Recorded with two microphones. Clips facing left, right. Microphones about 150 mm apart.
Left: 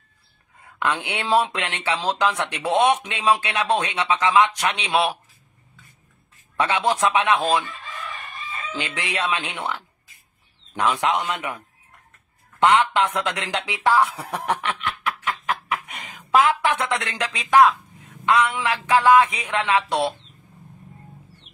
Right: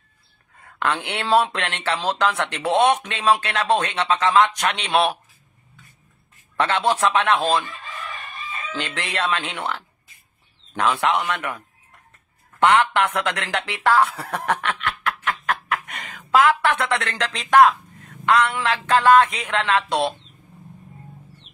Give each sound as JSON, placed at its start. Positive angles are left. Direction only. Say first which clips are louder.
{"t": 0.7, "sound": "a man's voice", "louder": "right 1 dB", "side_deg": 10}
{"t": 6.5, "sound": "a man's voice", "louder": "right 1 dB", "side_deg": 10}
{"t": 8.7, "sound": "a man's voice", "louder": "right 1 dB", "side_deg": 10}
{"t": 12.6, "sound": "a man's voice", "louder": "even", "side_deg": 10}
{"t": 13.7, "sound": "snicker", "louder": "right 1 dB", "side_deg": 15}
{"t": 17.4, "sound": "a man's voice", "louder": "right 1 dB", "side_deg": 10}